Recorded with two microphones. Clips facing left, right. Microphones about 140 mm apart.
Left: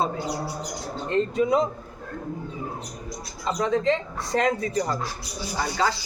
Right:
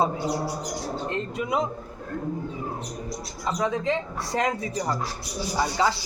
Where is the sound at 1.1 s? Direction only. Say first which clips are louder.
Left 8 dB; 5° right (ahead or behind).